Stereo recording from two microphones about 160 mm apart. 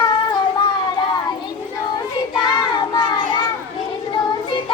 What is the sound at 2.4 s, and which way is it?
Child singing, 30° left (ahead or behind).